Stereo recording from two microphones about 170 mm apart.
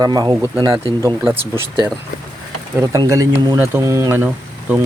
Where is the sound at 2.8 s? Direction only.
20° right (ahead or behind).